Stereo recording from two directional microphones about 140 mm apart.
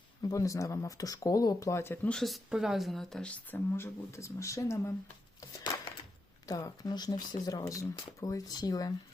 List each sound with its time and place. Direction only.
0.2 s speech: 25° left (ahead or behind)
2.1 s speech: centre (ahead or behind); by 4.9 s 20° left (ahead or behind)
6.5 s speech: 30° left (ahead or behind)